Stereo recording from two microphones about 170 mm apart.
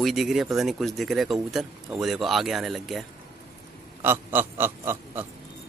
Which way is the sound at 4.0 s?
10° right (ahead or behind).